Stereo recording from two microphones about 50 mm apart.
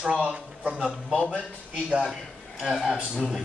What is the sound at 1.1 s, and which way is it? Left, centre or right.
Speech, left.